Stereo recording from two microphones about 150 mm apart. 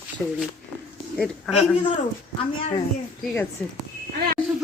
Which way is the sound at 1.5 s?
5° left (ahead or behind).